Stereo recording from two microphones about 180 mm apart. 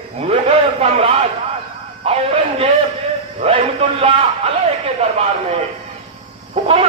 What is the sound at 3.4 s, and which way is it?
A man's voice, 35° right (ahead or behind).